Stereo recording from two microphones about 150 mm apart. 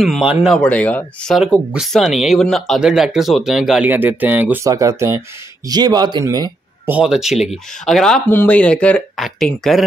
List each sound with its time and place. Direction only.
0.0 s speech: 5° right (ahead or behind)
0.6 s speech: 10° left (ahead or behind)
1.7 s speech: centre (ahead or behind); by 6.5 s 25° right (ahead or behind)
6.9 s speech: 5° right (ahead or behind)